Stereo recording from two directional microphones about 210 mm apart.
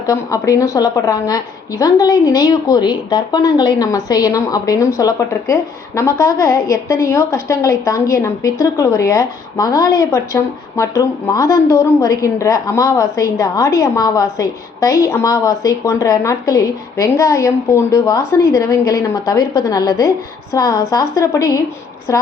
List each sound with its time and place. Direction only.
0.0 s a woman's voice: 15° left (ahead or behind)